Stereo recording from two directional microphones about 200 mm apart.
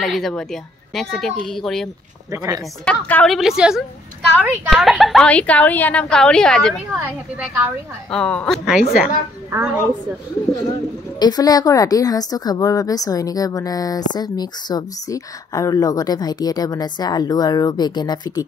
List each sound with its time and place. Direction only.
0.0 s a woman's voice: centre (ahead or behind)
2.3 s a woman's voice: 20° right (ahead or behind)
2.8 s a woman's voice: 5° left (ahead or behind)
7.0 s a woman's voice: 10° right (ahead or behind)
11.1 s a woman's voice: 20° left (ahead or behind)